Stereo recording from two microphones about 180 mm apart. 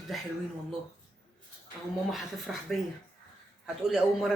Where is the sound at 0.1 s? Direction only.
Centre (ahead or behind).